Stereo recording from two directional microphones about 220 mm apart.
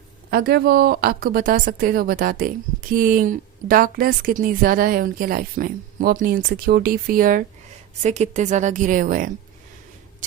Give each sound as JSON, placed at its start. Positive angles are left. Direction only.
{"t": 0.3, "sound": "a woman's voice", "side_deg": -45}